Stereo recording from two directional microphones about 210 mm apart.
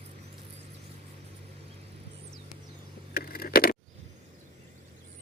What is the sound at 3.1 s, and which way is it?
Vehicle, 45° left (ahead or behind).